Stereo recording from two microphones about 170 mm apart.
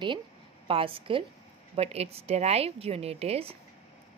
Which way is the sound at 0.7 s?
30° right (ahead or behind).